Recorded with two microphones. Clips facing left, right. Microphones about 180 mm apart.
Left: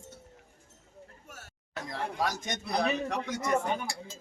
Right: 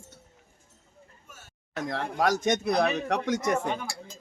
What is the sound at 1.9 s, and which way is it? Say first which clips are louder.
Speech: right 6 dB; 80° right.